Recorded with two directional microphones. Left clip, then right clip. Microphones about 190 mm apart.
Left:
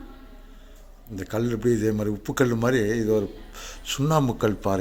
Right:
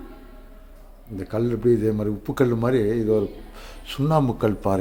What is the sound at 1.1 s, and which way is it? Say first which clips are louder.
Speech: right 2 dB; centre (ahead or behind).